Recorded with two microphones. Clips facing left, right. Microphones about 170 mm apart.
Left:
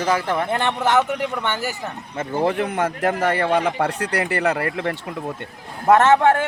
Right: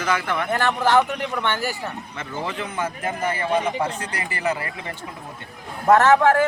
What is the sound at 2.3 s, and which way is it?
Speech, 60° left (ahead or behind).